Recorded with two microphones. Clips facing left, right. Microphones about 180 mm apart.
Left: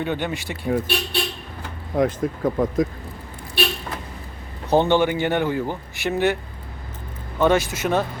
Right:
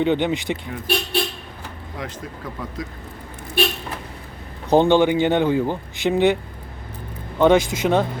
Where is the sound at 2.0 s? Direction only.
50° left (ahead or behind).